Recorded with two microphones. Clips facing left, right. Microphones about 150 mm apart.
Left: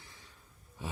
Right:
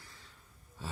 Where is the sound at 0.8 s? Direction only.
15° left (ahead or behind).